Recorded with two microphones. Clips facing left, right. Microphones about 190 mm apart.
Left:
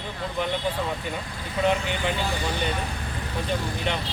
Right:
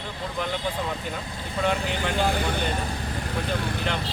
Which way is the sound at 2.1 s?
50° right (ahead or behind).